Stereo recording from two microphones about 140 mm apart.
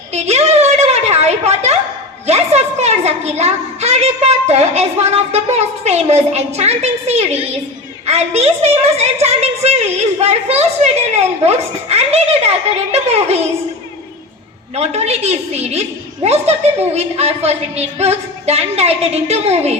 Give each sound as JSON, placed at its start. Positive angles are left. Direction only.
{"t": 0.1, "sound": "a sound", "side_deg": -50}
{"t": 2.2, "sound": "a woman's voice", "side_deg": -50}
{"t": 14.8, "sound": "a woman's voice", "side_deg": -50}